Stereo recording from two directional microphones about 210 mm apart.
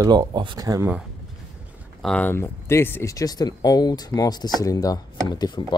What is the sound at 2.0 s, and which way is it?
Speech, 5° left (ahead or behind).